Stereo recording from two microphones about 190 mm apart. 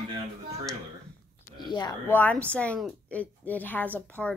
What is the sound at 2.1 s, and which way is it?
A woman's voice, 10° left (ahead or behind).